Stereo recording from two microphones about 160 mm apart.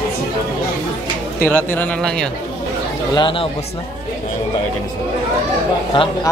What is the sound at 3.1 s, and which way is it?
Speech, 30° left (ahead or behind).